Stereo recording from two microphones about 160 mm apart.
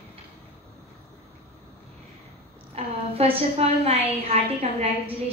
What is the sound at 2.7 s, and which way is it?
A woman's voice, 40° right (ahead or behind).